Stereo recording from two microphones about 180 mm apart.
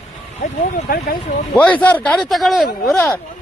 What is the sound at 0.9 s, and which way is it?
Speech, 55° left (ahead or behind).